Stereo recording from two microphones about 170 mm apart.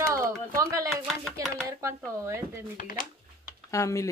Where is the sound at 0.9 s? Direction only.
Centre (ahead or behind).